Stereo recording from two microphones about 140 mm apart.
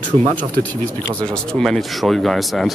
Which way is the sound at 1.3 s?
5° left (ahead or behind).